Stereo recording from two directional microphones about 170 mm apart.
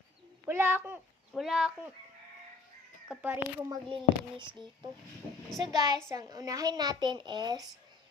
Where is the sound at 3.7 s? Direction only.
30° right (ahead or behind).